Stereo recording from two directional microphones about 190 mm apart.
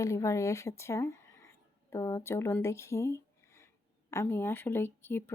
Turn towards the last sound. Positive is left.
turn(degrees=10)  # may be behind; listen again after turning